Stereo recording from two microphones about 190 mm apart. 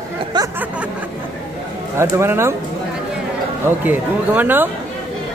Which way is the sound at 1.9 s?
15° right (ahead or behind).